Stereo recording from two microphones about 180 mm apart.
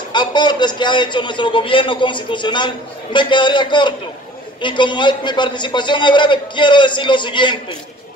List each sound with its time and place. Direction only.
0.1 s a man's voice: 25° left (ahead or behind)